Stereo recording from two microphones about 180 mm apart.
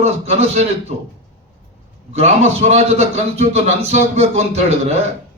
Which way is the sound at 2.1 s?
40° right (ahead or behind).